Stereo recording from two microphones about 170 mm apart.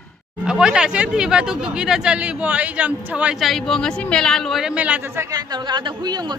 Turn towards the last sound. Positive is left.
turn(degrees=-25)  # may be behind; listen again after turning